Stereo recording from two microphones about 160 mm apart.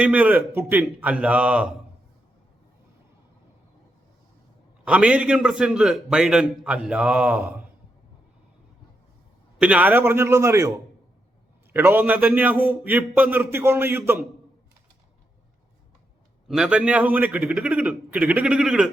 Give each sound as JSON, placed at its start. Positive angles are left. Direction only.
{"t": 0.0, "sound": "a man's voice", "side_deg": -10}
{"t": 4.9, "sound": "a man's voice", "side_deg": -5}
{"t": 9.6, "sound": "a man's voice", "side_deg": -10}
{"t": 16.5, "sound": "a man's voice", "side_deg": -5}